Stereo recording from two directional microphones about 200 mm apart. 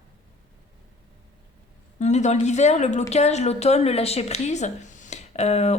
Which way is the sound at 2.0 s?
35° left (ahead or behind).